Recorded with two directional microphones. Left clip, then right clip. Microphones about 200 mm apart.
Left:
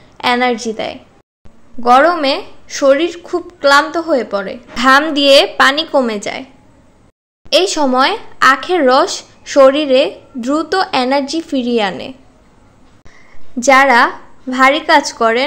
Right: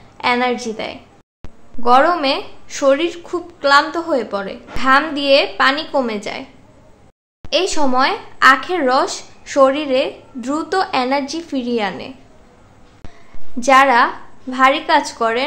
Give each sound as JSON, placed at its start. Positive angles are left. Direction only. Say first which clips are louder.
{"t": 0.2, "sound": "speech", "louder": "left 3 dB", "side_deg": 20}
{"t": 4.7, "sound": "a woman's voice", "louder": "left 4 dB", "side_deg": 40}
{"t": 7.4, "sound": "speech", "louder": "left 5 dB", "side_deg": 25}
{"t": 13.6, "sound": "speech", "louder": "left 3 dB", "side_deg": 25}